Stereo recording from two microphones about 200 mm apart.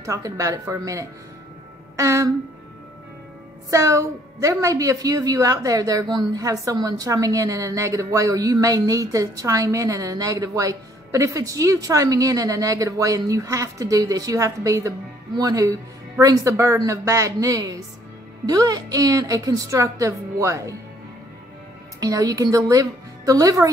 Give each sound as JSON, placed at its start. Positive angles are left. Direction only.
{"t": 0.0, "sound": "a woman's voice", "side_deg": -15}
{"t": 3.7, "sound": "a woman's voice", "side_deg": -15}
{"t": 22.0, "sound": "a woman's voice", "side_deg": -15}